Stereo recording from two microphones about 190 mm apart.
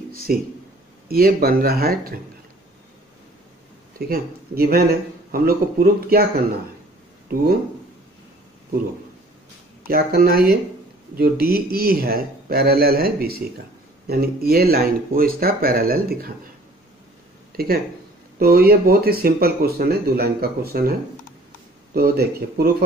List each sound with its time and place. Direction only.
0.3 s speech: 50° right (ahead or behind)
4.1 s speech: 50° right (ahead or behind)
9.8 s speech: 50° right (ahead or behind)
18.4 s speech: 55° right (ahead or behind)
21.9 s speech: 55° right (ahead or behind)